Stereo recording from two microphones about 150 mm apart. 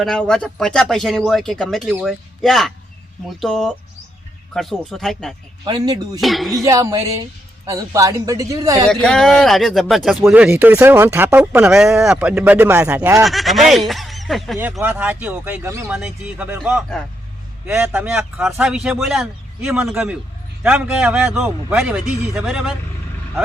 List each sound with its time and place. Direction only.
0.0 s a man's voice: 5° left (ahead or behind)
5.6 s speech: 30° right (ahead or behind)
6.1 s a man's voice: centre (ahead or behind)
6.6 s speech: 20° right (ahead or behind)
8.9 s a man's voice: 5° left (ahead or behind); by 13.2 s 15° right (ahead or behind)
13.2 s speech: centre (ahead or behind)
14.6 s speech: 10° right (ahead or behind)
15.9 s a man's voice: 5° right (ahead or behind)